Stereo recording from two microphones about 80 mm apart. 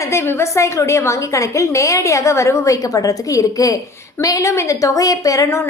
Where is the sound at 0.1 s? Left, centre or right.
Left.